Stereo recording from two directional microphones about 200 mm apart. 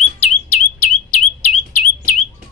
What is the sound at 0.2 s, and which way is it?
Bird, 35° left (ahead or behind).